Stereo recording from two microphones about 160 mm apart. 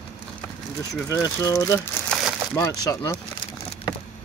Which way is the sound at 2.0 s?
15° left (ahead or behind).